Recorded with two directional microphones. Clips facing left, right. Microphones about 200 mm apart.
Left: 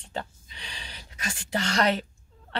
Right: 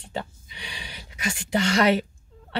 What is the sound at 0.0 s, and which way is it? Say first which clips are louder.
Speech: right 2 dB; 10° right (ahead or behind).